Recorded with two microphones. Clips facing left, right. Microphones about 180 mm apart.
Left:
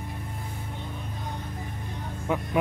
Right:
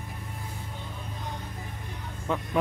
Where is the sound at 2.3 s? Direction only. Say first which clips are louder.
Left 2 dB; 10° left (ahead or behind).